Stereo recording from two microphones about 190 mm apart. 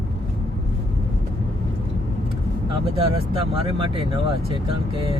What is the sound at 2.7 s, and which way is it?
Speech, 30° right (ahead or behind).